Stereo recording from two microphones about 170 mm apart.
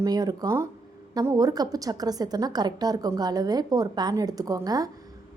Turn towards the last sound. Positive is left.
turn(degrees=-20)  # may be behind; listen again after turning